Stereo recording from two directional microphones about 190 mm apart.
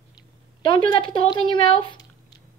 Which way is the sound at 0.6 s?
25° left (ahead or behind).